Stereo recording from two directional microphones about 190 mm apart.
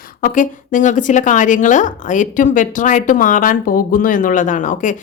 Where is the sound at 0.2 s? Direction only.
45° left (ahead or behind).